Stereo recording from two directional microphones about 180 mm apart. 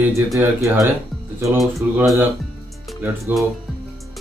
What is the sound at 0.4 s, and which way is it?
Speech, 15° right (ahead or behind).